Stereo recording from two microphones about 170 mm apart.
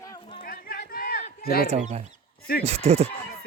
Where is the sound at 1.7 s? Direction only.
40° right (ahead or behind).